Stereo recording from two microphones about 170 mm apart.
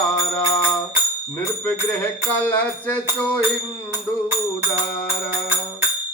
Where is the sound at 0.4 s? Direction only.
20° left (ahead or behind).